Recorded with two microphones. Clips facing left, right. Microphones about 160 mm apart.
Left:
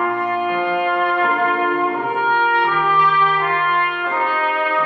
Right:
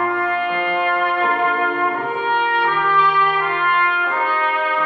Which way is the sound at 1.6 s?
15° left (ahead or behind).